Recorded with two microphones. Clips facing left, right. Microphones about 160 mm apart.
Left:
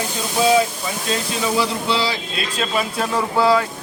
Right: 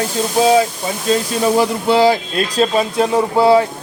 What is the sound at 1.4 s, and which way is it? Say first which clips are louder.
Speech: right 6 dB; 50° right (ahead or behind).